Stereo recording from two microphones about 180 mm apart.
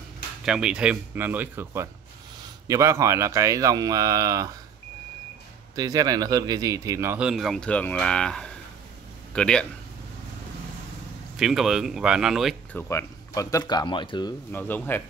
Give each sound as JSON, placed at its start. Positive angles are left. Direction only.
{"t": 0.5, "sound": "speech", "side_deg": -5}
{"t": 5.8, "sound": "speech", "side_deg": -20}
{"t": 11.3, "sound": "speech", "side_deg": 0}
{"t": 12.7, "sound": "speech", "side_deg": 15}
{"t": 14.5, "sound": "speech", "side_deg": 10}